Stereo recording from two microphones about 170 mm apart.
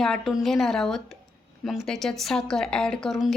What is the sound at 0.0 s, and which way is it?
Speech, centre (ahead or behind).